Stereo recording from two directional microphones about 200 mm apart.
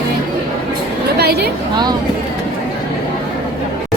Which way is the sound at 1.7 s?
20° right (ahead or behind).